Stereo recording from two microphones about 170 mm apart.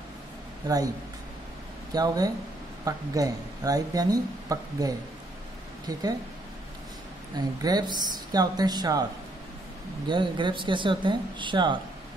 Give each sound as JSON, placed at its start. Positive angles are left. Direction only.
{"t": 2.0, "sound": "speech", "side_deg": -20}
{"t": 7.3, "sound": "speech", "side_deg": -25}
{"t": 10.0, "sound": "speech", "side_deg": -25}